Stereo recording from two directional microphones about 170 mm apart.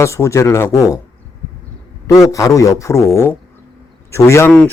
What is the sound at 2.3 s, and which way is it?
Speech, 20° left (ahead or behind).